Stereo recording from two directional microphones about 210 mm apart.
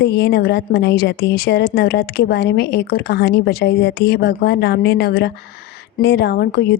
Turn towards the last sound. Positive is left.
turn(degrees=50)  # may be behind; listen again after turning